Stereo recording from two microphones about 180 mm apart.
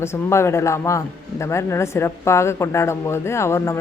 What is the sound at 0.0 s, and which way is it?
Speech, 15° left (ahead or behind).